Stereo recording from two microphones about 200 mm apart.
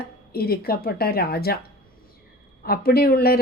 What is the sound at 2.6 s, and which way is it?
Speech, 50° left (ahead or behind).